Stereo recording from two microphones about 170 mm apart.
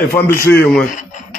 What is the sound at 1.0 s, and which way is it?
Radio, 45° left (ahead or behind).